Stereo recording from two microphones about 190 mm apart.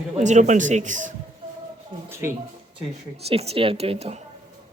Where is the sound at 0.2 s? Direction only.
40° right (ahead or behind).